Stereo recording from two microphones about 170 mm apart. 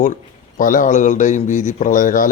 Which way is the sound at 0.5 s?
50° left (ahead or behind).